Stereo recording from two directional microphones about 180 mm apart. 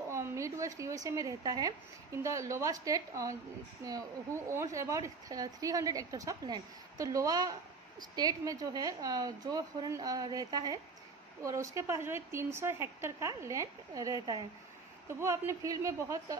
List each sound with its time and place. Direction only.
0.1 s a woman's voice: 15° right (ahead or behind)